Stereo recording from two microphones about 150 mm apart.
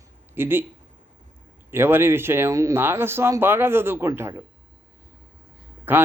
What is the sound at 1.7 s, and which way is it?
Speech, 15° right (ahead or behind).